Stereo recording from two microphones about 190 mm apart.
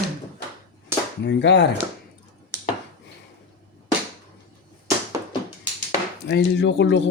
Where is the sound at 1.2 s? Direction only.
70° left (ahead or behind).